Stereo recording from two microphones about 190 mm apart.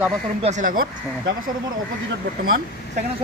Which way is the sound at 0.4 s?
40° right (ahead or behind).